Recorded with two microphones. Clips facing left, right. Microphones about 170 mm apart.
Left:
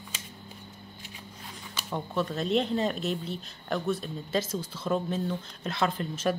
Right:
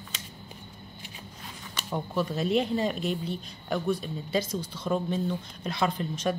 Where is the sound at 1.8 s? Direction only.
Centre (ahead or behind).